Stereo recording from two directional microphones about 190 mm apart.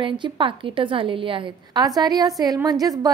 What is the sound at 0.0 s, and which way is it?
A woman's voice, 25° right (ahead or behind).